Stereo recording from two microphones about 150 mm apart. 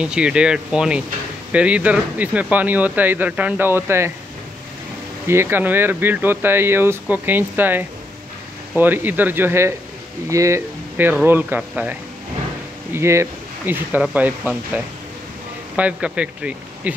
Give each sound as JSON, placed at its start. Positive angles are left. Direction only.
{"t": 0.0, "sound": "speech", "side_deg": -5}
{"t": 5.3, "sound": "speech", "side_deg": -15}
{"t": 15.7, "sound": "speech", "side_deg": -10}